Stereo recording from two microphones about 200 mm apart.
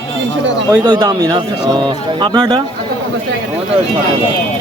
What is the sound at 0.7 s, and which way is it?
Speech, 20° right (ahead or behind).